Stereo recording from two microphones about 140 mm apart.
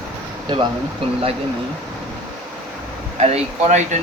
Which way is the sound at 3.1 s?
55° right (ahead or behind).